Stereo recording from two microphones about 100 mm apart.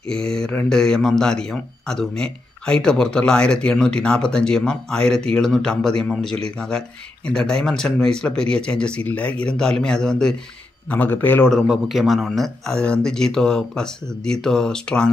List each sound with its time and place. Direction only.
0.1 s a man's voice: 5° left (ahead or behind)
10.9 s a man's voice: 20° left (ahead or behind)
11.6 s speech: 5° right (ahead or behind)